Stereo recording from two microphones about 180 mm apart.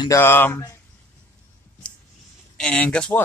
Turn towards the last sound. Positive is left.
turn(degrees=5)  # may be behind; listen again after turning